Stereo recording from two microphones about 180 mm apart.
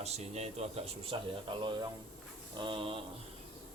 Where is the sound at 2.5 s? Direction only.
25° right (ahead or behind).